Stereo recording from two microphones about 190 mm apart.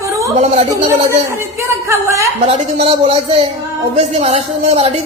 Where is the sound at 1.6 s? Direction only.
15° right (ahead or behind).